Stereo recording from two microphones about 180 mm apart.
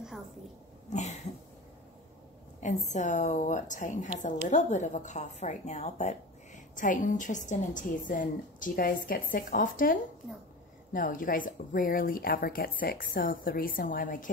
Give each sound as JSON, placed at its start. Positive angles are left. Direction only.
{"t": 2.6, "sound": "a woman's voice", "side_deg": 45}